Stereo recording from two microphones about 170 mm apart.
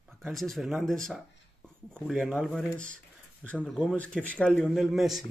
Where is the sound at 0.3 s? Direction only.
Centre (ahead or behind).